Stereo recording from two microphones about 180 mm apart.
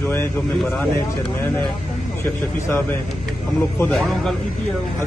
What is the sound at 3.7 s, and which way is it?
Speech, 5° left (ahead or behind).